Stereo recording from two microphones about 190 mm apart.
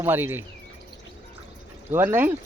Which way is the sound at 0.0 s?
10° right (ahead or behind).